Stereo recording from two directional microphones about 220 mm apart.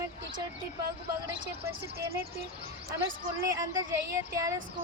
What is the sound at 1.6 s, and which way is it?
Speech, 10° right (ahead or behind).